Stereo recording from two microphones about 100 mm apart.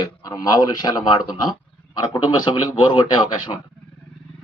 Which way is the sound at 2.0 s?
45° left (ahead or behind).